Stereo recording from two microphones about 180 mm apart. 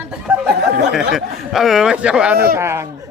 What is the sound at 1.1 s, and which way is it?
Speech, centre (ahead or behind).